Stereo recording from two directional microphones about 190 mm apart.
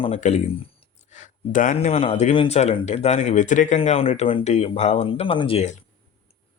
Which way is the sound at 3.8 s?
30° left (ahead or behind).